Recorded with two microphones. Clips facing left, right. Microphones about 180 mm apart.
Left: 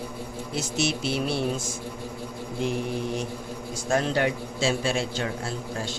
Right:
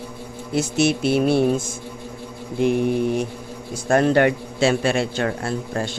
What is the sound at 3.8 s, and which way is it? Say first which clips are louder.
A man's voice: right 8 dB; 60° right (ahead or behind).